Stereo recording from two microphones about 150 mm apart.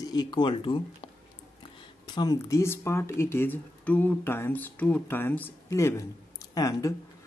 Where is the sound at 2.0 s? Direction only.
25° left (ahead or behind).